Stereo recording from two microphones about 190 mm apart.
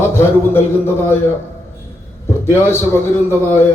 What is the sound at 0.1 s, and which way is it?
A man's voice, 10° left (ahead or behind).